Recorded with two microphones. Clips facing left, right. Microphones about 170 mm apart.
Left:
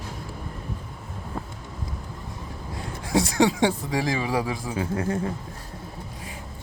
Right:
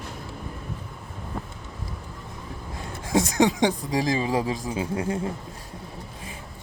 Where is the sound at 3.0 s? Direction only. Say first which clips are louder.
Even; 20° right (ahead or behind).